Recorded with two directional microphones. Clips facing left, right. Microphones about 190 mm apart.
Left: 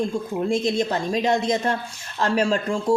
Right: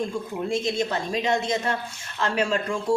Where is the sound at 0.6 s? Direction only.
35° left (ahead or behind).